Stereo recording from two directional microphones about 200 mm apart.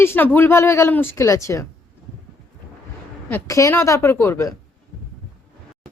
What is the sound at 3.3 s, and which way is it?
Speech, 15° left (ahead or behind).